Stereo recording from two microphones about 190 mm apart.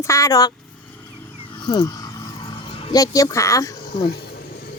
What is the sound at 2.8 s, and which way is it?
Speech, 20° left (ahead or behind).